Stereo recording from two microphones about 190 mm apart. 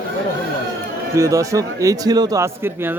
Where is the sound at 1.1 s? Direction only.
15° right (ahead or behind).